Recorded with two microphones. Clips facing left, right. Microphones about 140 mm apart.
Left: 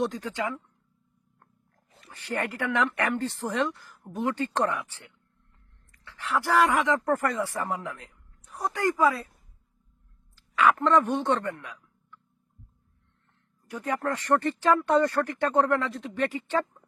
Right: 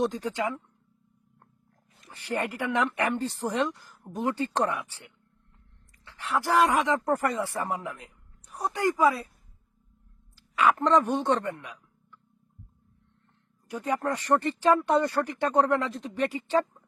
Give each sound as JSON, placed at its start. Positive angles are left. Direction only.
{"t": 0.0, "sound": "speech", "side_deg": -20}
{"t": 2.0, "sound": "speech", "side_deg": -15}
{"t": 6.1, "sound": "speech", "side_deg": -15}
{"t": 10.5, "sound": "a man's voice", "side_deg": -20}
{"t": 13.7, "sound": "speech", "side_deg": -15}